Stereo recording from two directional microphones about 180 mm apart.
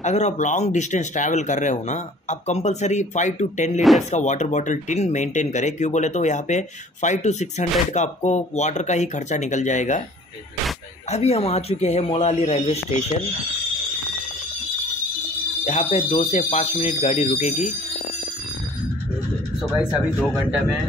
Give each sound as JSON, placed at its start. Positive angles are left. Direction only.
{"t": 0.0, "sound": "speech", "side_deg": 40}
{"t": 11.1, "sound": "speech", "side_deg": 35}
{"t": 15.6, "sound": "speech", "side_deg": 35}
{"t": 19.8, "sound": "speech", "side_deg": -5}